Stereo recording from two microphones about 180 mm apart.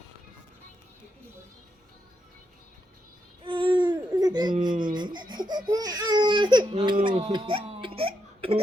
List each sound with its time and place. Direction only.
3.4 s baby cry: 25° right (ahead or behind)
7.0 s a sound: 35° right (ahead or behind)
7.3 s hiccup: 30° right (ahead or behind)